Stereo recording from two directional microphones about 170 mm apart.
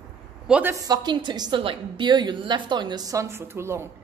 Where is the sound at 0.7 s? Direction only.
20° right (ahead or behind).